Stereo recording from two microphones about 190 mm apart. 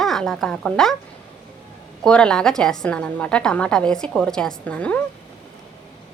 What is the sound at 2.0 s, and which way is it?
A woman's voice, 5° left (ahead or behind).